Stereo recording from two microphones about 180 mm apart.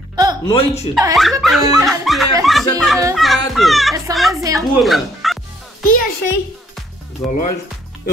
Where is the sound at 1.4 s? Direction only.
Centre (ahead or behind).